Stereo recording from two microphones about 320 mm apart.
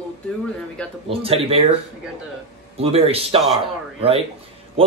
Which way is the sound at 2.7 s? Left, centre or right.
Centre.